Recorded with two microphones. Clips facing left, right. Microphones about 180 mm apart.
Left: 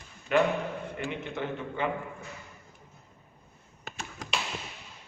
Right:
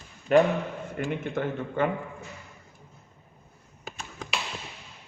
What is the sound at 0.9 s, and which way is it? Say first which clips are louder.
Speech: right 5 dB; 50° right (ahead or behind).